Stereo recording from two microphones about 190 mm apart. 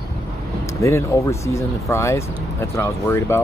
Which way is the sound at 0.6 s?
15° left (ahead or behind).